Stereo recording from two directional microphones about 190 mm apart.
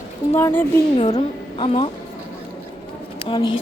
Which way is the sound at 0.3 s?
15° left (ahead or behind).